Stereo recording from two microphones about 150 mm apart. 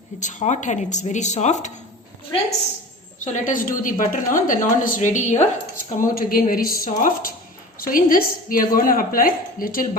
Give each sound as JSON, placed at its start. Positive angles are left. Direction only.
{"t": 0.2, "sound": "speech", "side_deg": 55}
{"t": 3.3, "sound": "a woman's voice", "side_deg": 60}